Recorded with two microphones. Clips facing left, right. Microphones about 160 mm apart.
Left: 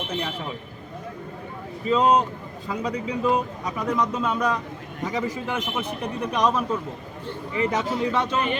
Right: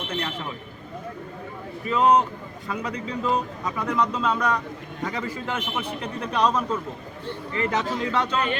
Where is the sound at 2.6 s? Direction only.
15° left (ahead or behind).